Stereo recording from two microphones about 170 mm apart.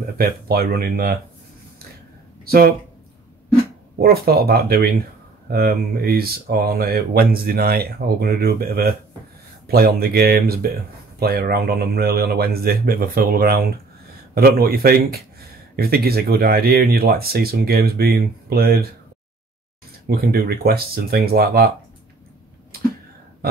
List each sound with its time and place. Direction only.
0.0 s speech: 65° right (ahead or behind)
2.4 s speech: 65° right (ahead or behind)
4.0 s speech: 65° right (ahead or behind)
20.1 s speech: 65° right (ahead or behind)